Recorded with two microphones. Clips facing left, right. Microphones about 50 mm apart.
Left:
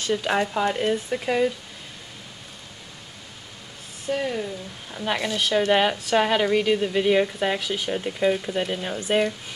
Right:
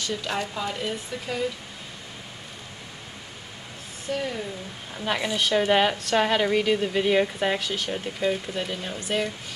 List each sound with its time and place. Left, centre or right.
0.0 s speech: left
4.1 s a woman's voice: centre